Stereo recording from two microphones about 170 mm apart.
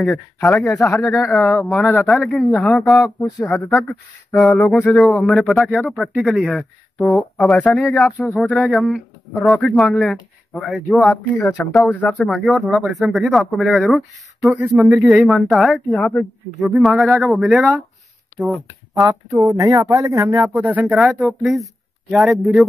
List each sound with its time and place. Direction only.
0.1 s speech: 15° left (ahead or behind)
2.0 s a man's voice: centre (ahead or behind)
2.5 s a man's voice: 10° left (ahead or behind); by 19.0 s 5° right (ahead or behind)
19.0 s a man's voice: 20° right (ahead or behind); by 22.7 s centre (ahead or behind)